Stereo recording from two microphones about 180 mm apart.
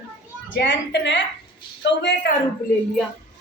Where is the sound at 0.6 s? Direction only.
75° left (ahead or behind).